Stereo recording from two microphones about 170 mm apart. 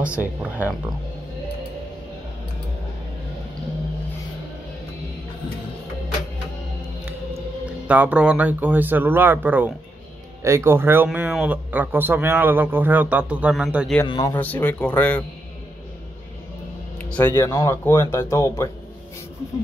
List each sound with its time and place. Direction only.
0.0 s a man's voice: 5° right (ahead or behind)
7.6 s a man's voice: 10° right (ahead or behind)
14.0 s speech: 30° left (ahead or behind)
14.3 s speech: 10° left (ahead or behind)
17.0 s speech: 10° left (ahead or behind)